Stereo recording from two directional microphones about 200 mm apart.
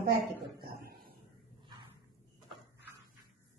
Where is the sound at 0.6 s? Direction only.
50° right (ahead or behind).